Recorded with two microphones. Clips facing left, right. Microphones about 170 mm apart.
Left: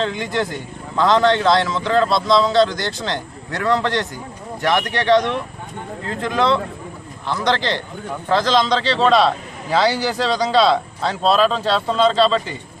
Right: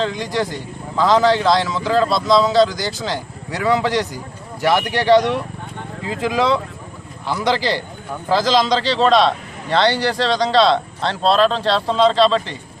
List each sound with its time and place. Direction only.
0.0 s a man's voice: centre (ahead or behind)